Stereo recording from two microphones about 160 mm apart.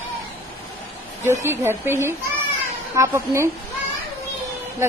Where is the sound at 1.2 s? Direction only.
15° right (ahead or behind).